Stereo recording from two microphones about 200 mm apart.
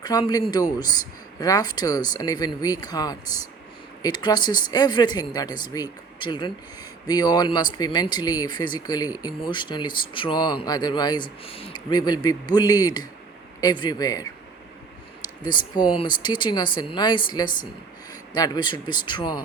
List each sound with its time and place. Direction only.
0.0 s speech: 20° left (ahead or behind)